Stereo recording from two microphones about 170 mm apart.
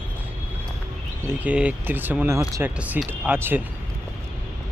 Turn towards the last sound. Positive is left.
turn(degrees=-10)  # may be behind; listen again after turning